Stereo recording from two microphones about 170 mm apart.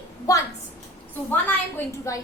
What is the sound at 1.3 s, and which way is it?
Speech, 10° left (ahead or behind).